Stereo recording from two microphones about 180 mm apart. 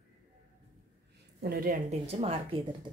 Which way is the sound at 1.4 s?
60° right (ahead or behind).